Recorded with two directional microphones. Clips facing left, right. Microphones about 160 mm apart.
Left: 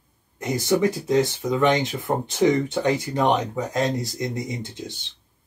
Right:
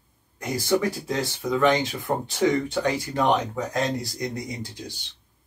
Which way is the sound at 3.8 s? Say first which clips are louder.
Left 4 dB; 20° left (ahead or behind).